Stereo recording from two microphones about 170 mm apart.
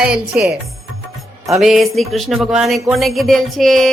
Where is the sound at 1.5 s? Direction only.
Centre (ahead or behind).